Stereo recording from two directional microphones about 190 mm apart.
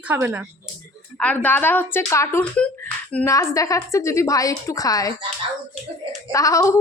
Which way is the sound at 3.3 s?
15° left (ahead or behind).